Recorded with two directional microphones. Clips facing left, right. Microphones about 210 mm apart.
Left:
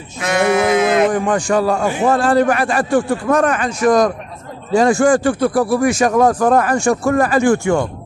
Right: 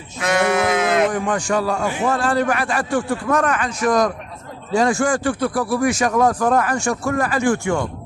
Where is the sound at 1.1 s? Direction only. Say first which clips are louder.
Left 4 dB; 40° left (ahead or behind).